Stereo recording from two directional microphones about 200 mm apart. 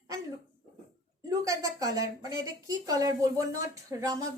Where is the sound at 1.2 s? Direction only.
15° right (ahead or behind).